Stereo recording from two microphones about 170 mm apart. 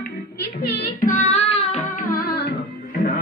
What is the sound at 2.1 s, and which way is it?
Music, 70° left (ahead or behind).